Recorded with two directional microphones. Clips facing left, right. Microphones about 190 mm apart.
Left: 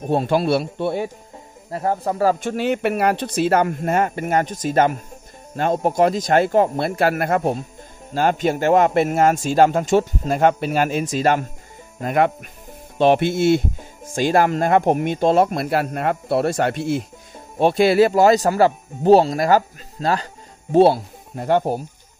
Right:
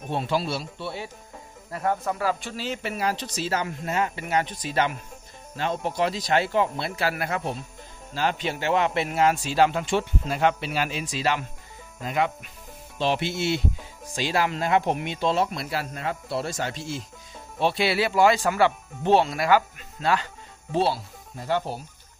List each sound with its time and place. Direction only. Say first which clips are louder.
0.0 s speech: left 8 dB; 40° left (ahead or behind)
1.7 s speech: left 4 dB; 30° left (ahead or behind); by 17.0 s 60° left (ahead or behind)
17.6 s speech: left 9 dB; 45° left (ahead or behind)
20.7 s speech: left 11 dB; 55° left (ahead or behind)